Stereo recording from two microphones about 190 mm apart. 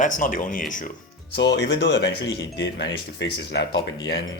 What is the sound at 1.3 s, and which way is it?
Speech, 65° left (ahead or behind).